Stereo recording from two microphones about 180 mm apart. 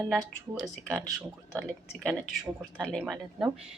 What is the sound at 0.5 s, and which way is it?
Speech, centre (ahead or behind).